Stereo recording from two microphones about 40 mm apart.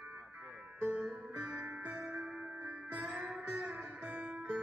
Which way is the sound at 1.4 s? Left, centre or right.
Right.